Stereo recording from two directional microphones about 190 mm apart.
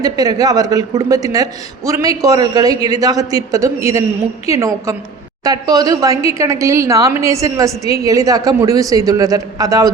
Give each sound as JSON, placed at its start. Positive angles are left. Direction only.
{"t": 0.0, "sound": "a man's voice", "side_deg": -20}